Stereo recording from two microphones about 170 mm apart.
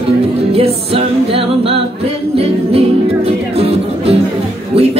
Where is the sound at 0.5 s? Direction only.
35° right (ahead or behind).